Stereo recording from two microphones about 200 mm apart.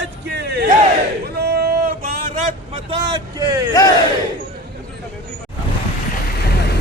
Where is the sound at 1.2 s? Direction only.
50° right (ahead or behind).